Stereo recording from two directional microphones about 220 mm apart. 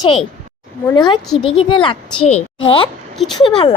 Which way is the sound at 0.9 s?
20° left (ahead or behind).